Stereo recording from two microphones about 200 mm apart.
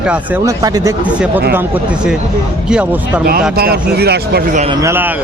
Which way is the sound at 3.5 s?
50° right (ahead or behind).